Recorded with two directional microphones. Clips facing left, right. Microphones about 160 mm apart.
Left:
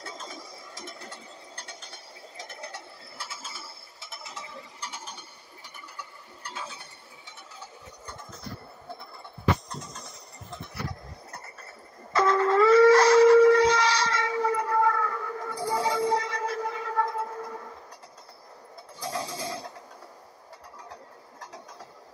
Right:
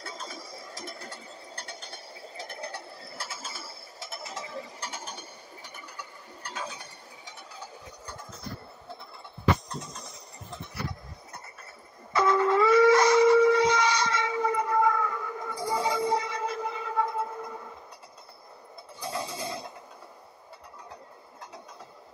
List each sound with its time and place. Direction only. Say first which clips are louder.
0.5 s ratchet: right 2 dB; 35° right (ahead or behind)
12.1 s shofar: left 1 dB; 10° right (ahead or behind)